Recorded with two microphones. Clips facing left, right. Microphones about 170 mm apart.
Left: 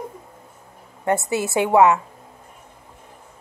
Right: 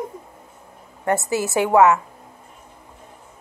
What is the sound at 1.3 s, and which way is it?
Speech, 20° left (ahead or behind).